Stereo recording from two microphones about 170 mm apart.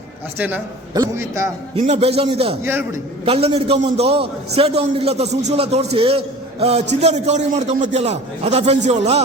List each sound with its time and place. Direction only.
0.3 s a man's voice: 10° right (ahead or behind)
1.7 s a man's voice: 35° right (ahead or behind)
2.6 s a man's voice: 15° right (ahead or behind)
3.2 s a man's voice: 35° right (ahead or behind)